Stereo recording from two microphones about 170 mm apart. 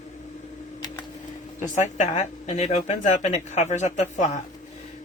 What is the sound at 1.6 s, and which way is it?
Speech, 45° left (ahead or behind).